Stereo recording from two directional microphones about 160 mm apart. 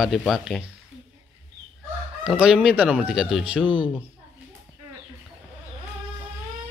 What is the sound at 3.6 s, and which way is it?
Speech, 30° left (ahead or behind).